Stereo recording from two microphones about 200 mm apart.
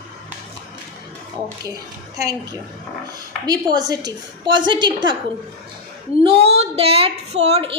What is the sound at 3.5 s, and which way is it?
A woman's voice, 20° right (ahead or behind).